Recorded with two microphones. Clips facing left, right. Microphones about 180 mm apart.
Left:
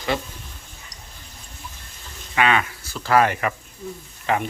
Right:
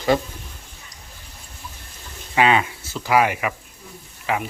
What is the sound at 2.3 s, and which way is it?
Speech, 25° right (ahead or behind).